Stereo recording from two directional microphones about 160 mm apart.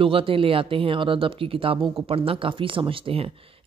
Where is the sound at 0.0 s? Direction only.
35° right (ahead or behind).